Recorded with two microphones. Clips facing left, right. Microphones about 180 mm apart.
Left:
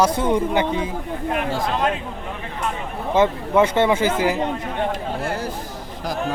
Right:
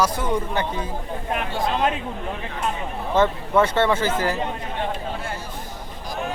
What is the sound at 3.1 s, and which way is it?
Speech, 15° left (ahead or behind).